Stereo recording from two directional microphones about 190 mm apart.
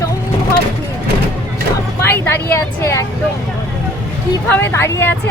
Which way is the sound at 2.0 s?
10° left (ahead or behind).